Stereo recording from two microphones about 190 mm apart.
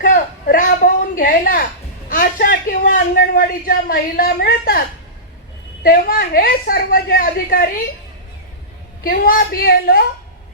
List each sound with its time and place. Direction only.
0.0 s a sound: 45° left (ahead or behind)
2.0 s a man's voice: 45° left (ahead or behind)
5.8 s a man's voice: 50° left (ahead or behind)
9.0 s a man's voice: 50° left (ahead or behind)